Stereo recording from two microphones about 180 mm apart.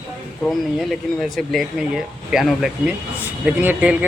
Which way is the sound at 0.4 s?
Centre (ahead or behind).